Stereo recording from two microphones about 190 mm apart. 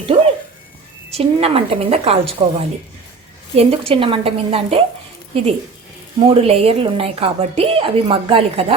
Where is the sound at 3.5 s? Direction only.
30° right (ahead or behind).